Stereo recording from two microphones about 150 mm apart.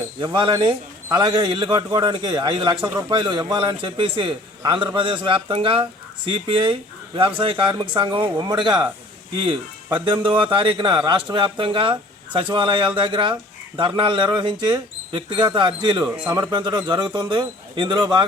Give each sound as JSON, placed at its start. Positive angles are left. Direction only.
{"t": 0.2, "sound": "a man's voice", "side_deg": -30}
{"t": 10.1, "sound": "a man's voice", "side_deg": -35}